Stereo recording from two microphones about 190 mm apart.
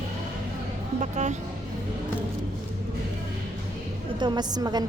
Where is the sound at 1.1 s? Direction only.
40° right (ahead or behind).